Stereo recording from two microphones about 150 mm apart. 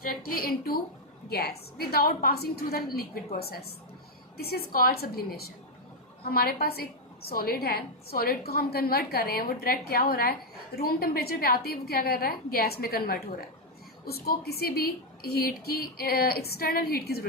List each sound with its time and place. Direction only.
0.0 s a woman's voice: 75° left (ahead or behind)